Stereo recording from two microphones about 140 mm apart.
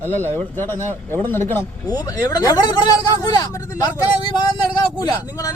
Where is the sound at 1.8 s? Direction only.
25° left (ahead or behind).